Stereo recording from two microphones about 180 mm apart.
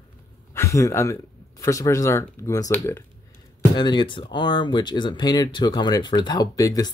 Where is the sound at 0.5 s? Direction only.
15° left (ahead or behind).